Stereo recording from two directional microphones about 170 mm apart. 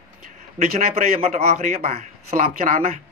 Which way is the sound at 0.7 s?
40° right (ahead or behind).